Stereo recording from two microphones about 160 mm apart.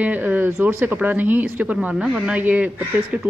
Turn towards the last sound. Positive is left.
turn(degrees=-10)  # may be behind; listen again after turning